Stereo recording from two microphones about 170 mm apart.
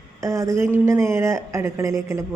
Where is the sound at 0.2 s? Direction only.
15° right (ahead or behind).